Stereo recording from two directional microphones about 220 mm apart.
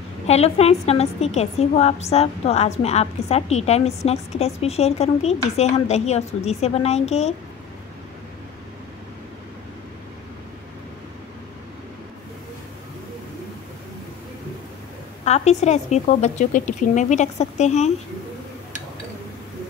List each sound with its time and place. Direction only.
0.3 s a woman's voice: 30° left (ahead or behind)
15.2 s speech: 30° left (ahead or behind)